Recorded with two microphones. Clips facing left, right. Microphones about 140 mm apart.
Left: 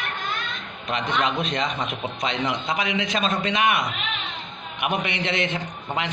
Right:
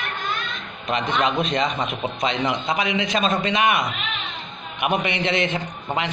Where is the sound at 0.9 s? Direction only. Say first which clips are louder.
Right 2 dB; centre (ahead or behind).